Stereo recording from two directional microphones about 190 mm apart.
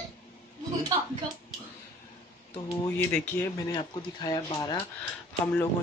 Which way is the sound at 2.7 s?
15° left (ahead or behind).